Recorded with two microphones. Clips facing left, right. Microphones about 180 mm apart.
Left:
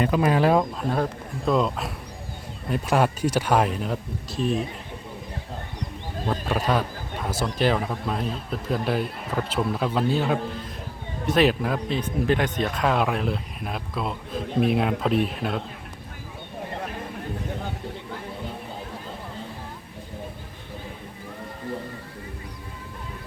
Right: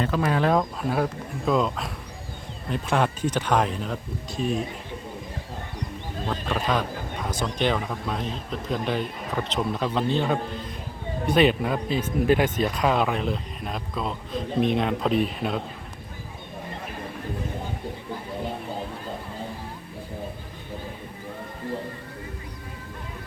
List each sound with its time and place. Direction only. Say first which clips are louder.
0.0 s a man's voice: left 3 dB; 15° left (ahead or behind)
6.2 s a man's voice: left 2 dB; 10° left (ahead or behind)